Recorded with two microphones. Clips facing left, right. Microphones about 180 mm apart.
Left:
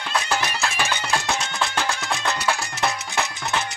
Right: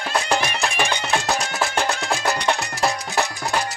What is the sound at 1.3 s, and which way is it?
Music, 35° right (ahead or behind).